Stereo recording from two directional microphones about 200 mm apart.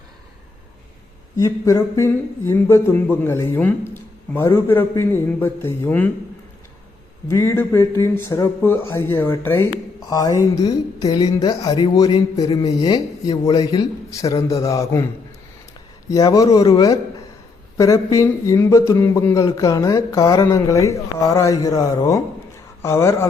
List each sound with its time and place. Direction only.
1.4 s speech: 15° left (ahead or behind)
7.3 s speech: 15° left (ahead or behind)